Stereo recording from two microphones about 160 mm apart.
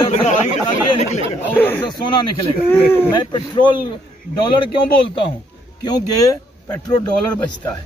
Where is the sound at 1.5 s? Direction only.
10° left (ahead or behind).